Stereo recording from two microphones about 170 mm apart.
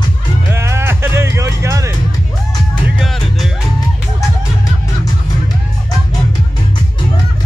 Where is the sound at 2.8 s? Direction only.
Centre (ahead or behind).